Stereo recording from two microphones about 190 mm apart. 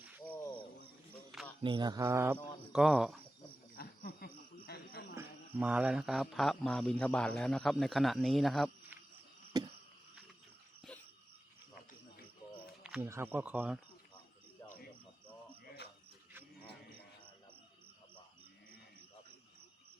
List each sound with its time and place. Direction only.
1.1 s a sound: 5° left (ahead or behind)
1.6 s speech: 25° right (ahead or behind); by 3.2 s centre (ahead or behind)
3.8 s cricket: 55° left (ahead or behind)
5.1 s speech: 10° right (ahead or behind)
9.5 s a sound: 20° right (ahead or behind)
11.7 s cricket: 50° left (ahead or behind)
12.8 s speech: 10° right (ahead or behind)